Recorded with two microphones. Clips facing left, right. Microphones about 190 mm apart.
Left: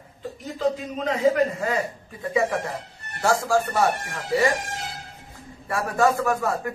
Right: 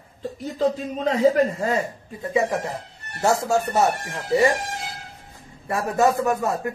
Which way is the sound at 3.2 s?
25° right (ahead or behind).